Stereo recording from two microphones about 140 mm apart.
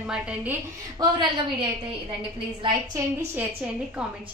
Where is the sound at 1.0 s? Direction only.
35° right (ahead or behind).